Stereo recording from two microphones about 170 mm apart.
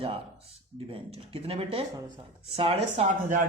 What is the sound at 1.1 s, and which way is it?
Speech, 35° right (ahead or behind).